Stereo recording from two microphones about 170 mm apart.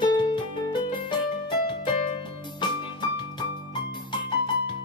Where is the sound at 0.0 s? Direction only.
25° left (ahead or behind).